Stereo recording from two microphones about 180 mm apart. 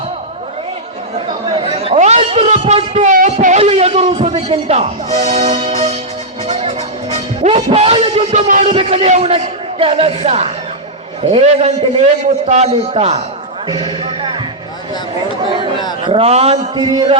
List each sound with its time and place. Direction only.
1.5 s a sound: 30° right (ahead or behind)
3.4 s music: 35° right (ahead or behind)
7.4 s a man's voice: 35° right (ahead or behind)
13.7 s music: 25° right (ahead or behind)
16.0 s a man's voice: 35° right (ahead or behind)